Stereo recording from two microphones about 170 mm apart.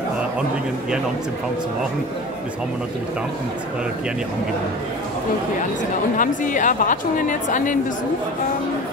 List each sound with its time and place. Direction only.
6.1 s a woman's voice: 50° left (ahead or behind)